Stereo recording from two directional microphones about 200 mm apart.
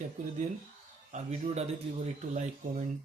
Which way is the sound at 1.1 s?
35° right (ahead or behind).